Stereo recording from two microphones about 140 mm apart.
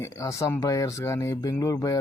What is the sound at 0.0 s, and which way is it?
Speech, 20° left (ahead or behind).